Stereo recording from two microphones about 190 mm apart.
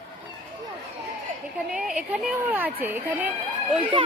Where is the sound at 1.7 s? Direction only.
5° right (ahead or behind).